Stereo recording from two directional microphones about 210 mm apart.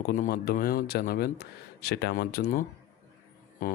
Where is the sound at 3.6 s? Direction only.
40° left (ahead or behind).